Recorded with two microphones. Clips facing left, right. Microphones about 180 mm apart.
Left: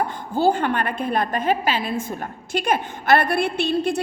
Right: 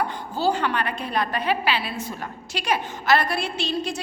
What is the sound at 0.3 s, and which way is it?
A woman's voice, 50° left (ahead or behind).